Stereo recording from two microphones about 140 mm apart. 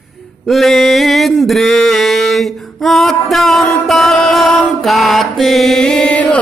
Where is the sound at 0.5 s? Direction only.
Centre (ahead or behind).